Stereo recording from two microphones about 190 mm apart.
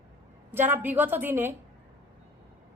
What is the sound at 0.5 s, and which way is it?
A woman's voice, 10° right (ahead or behind).